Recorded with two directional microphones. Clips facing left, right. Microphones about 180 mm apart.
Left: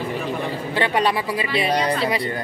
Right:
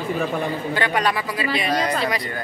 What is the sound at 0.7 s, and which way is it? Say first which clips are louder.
A woman's voice: left 3 dB; 30° left (ahead or behind).